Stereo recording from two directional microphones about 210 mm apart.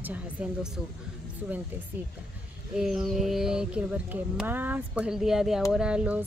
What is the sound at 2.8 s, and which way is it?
Speech, centre (ahead or behind).